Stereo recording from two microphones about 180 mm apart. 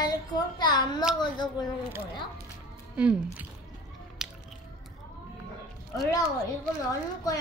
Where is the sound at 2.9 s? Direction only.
5° right (ahead or behind).